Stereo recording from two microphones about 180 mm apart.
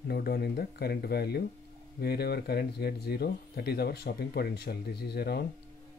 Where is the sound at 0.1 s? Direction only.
60° left (ahead or behind).